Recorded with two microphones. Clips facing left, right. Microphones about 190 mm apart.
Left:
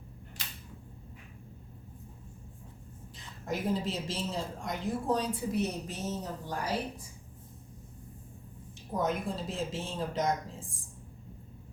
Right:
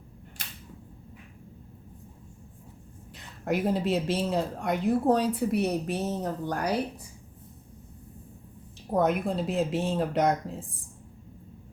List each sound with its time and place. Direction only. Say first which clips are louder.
3.2 s a woman's voice: right 7 dB; 65° right (ahead or behind)
8.9 s a woman's voice: right 7 dB; 60° right (ahead or behind)